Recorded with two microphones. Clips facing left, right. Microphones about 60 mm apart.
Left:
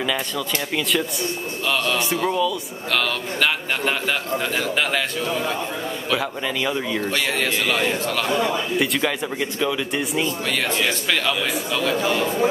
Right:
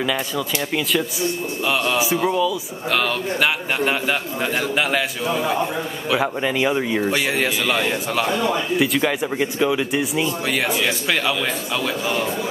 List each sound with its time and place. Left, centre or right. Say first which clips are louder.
1.7 s a man's voice: right 2 dB; centre
9.4 s a man's voice: right 4 dB; centre